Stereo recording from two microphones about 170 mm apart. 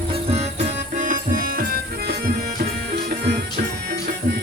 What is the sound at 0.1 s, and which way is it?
Music, 40° right (ahead or behind).